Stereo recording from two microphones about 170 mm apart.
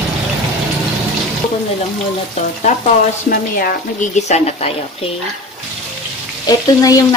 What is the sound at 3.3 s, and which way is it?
Speech, 55° left (ahead or behind).